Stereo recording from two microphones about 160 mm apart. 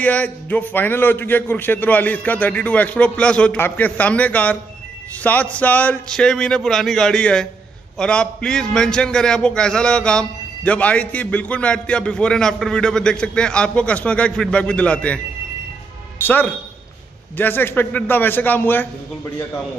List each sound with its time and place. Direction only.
0.0 s a man's voice: 10° left (ahead or behind)
16.2 s a man's voice: 10° left (ahead or behind)